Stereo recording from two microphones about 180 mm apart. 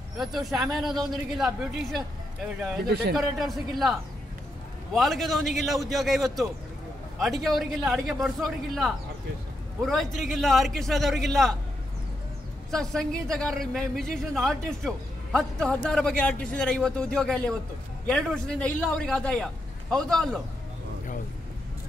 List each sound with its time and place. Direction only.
0.2 s a man's voice: centre (ahead or behind)
2.9 s a man's voice: 65° right (ahead or behind)
3.2 s a man's voice: centre (ahead or behind)
4.9 s a man's voice: centre (ahead or behind)
12.7 s a man's voice: centre (ahead or behind)